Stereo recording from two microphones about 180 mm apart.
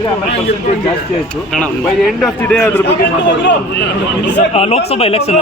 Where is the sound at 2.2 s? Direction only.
Centre (ahead or behind).